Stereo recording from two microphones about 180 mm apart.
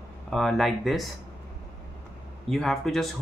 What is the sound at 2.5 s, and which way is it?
Speech, centre (ahead or behind).